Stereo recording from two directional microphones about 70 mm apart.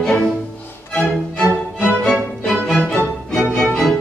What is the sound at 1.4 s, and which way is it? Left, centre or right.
Music, left.